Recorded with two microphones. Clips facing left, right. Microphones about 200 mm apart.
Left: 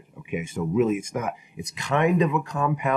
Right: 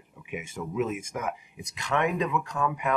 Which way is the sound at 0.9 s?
Centre (ahead or behind).